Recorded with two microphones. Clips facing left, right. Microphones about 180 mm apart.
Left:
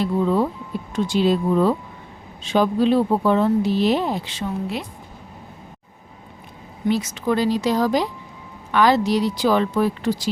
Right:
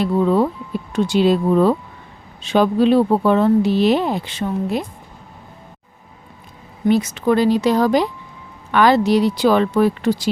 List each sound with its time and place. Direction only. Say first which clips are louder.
0.0 s speech: right 3 dB; 65° right (ahead or behind); by 4.9 s 50° right (ahead or behind)
6.8 s speech: right 5 dB; 60° right (ahead or behind)